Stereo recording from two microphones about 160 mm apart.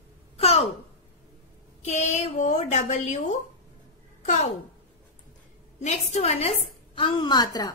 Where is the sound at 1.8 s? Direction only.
45° left (ahead or behind).